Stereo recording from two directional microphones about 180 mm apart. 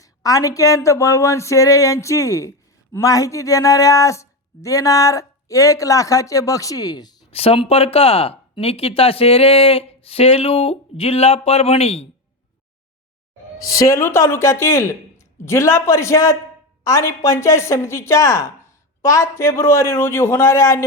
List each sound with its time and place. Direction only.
0.0 s speech: 20° left (ahead or behind); by 12.0 s 35° left (ahead or behind)
13.7 s speech: 15° left (ahead or behind)